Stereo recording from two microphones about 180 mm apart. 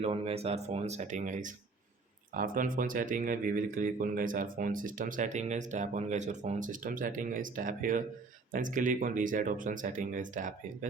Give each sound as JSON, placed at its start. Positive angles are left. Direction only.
{"t": 0.0, "sound": "speech", "side_deg": -35}